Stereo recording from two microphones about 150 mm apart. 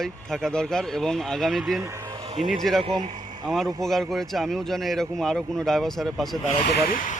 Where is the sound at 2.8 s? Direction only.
35° right (ahead or behind).